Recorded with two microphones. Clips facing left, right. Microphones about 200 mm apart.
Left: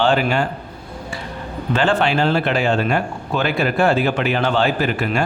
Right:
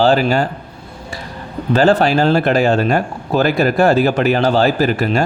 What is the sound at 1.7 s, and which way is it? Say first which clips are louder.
Speech: right 5 dB; 40° right (ahead or behind).